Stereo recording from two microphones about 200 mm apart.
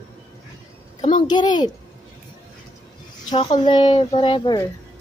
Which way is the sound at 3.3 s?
25° left (ahead or behind).